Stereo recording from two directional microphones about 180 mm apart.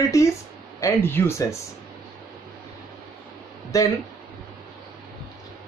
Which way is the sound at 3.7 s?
20° left (ahead or behind).